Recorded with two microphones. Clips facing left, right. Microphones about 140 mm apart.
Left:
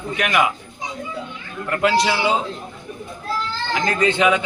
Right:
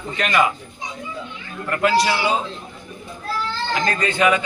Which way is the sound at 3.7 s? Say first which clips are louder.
Left 3 dB; 20° left (ahead or behind).